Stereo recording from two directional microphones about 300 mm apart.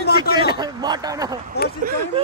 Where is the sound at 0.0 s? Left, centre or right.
Left.